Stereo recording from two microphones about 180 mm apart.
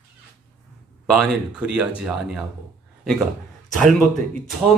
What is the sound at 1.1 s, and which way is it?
Speech, 5° right (ahead or behind).